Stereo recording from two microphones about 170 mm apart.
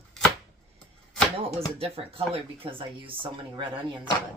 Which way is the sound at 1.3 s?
35° right (ahead or behind).